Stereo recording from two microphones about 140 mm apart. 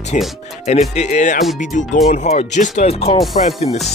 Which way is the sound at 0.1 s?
65° left (ahead or behind).